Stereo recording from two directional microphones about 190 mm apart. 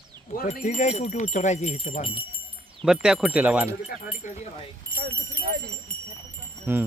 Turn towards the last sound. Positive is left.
turn(degrees=-10)  # may be behind; listen again after turning